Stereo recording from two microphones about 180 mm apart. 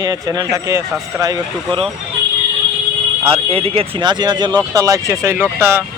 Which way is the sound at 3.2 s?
30° right (ahead or behind).